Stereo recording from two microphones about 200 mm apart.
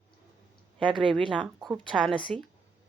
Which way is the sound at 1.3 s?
5° right (ahead or behind).